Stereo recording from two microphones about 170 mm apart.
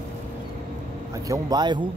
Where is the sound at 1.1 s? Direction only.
20° right (ahead or behind).